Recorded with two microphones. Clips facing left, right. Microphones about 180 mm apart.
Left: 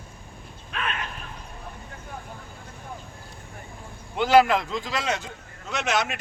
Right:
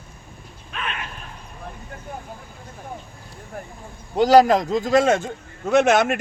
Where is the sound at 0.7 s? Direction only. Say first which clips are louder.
Even; centre (ahead or behind).